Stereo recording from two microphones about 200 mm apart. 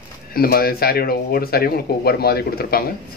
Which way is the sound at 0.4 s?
50° left (ahead or behind).